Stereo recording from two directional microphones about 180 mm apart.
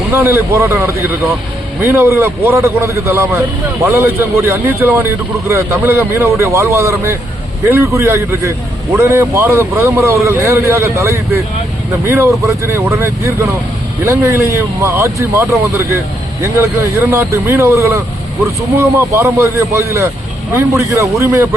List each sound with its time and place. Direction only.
0.1 s a man's voice: 15° right (ahead or behind)